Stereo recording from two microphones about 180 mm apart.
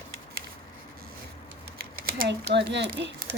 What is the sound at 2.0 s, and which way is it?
Speech, 60° right (ahead or behind).